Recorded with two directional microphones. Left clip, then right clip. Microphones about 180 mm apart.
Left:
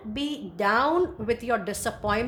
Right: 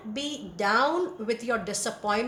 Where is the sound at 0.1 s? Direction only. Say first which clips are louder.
Left 2 dB; 55° left (ahead or behind).